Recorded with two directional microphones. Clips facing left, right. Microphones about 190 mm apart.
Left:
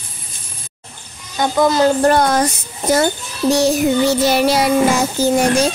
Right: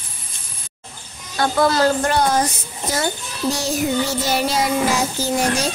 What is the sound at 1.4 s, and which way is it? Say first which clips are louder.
Speech: left 3 dB; 20° left (ahead or behind).